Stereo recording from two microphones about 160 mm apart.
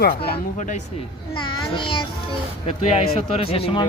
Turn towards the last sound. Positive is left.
turn(degrees=35)  # may be behind; listen again after turning